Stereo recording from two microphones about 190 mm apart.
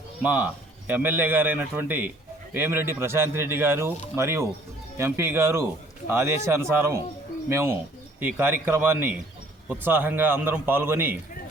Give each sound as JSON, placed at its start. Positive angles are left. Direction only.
{"t": 0.2, "sound": "a man's voice", "side_deg": -10}